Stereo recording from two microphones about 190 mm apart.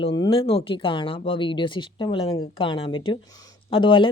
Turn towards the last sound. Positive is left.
turn(degrees=25)  # may be behind; listen again after turning